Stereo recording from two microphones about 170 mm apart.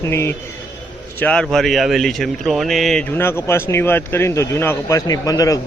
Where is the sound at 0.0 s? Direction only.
15° left (ahead or behind).